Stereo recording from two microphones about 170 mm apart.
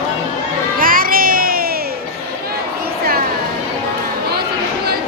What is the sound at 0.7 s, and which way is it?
Music, 55° right (ahead or behind).